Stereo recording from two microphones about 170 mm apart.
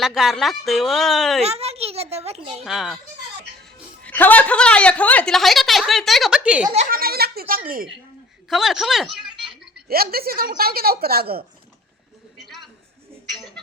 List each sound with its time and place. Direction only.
0.0 s a woman's voice: centre (ahead or behind)
1.4 s a child's voice: 35° right (ahead or behind)
2.6 s a woman's voice: centre (ahead or behind)
4.0 s a woman's voice: 10° left (ahead or behind); by 6.7 s 5° right (ahead or behind)
6.9 s speech: 60° right (ahead or behind)
8.4 s speech: centre (ahead or behind)
9.9 s a woman's voice: 60° right (ahead or behind)
13.3 s a sound: centre (ahead or behind)